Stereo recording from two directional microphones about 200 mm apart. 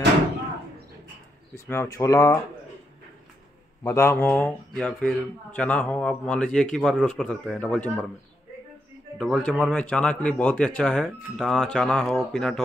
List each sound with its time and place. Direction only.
1.5 s speech: 15° left (ahead or behind)
3.8 s speech: 15° left (ahead or behind)
9.2 s speech: 5° left (ahead or behind)